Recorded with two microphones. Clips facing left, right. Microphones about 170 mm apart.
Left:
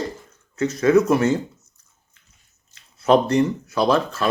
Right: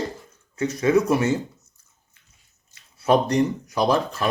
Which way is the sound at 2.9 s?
15° right (ahead or behind).